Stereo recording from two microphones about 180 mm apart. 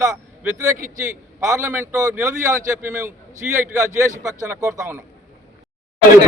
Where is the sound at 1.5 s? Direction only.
15° right (ahead or behind).